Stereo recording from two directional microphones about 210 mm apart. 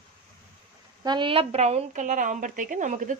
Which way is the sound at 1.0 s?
20° right (ahead or behind).